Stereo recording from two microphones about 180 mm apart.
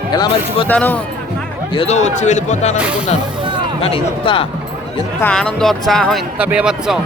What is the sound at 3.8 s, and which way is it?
Speech, 30° left (ahead or behind).